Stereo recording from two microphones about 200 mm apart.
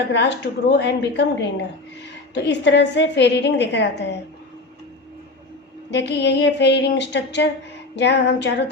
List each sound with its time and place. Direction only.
0.1 s a woman's voice: 60° left (ahead or behind)
5.9 s a woman's voice: 60° left (ahead or behind)